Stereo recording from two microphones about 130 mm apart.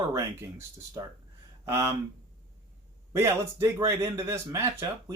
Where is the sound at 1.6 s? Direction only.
20° right (ahead or behind).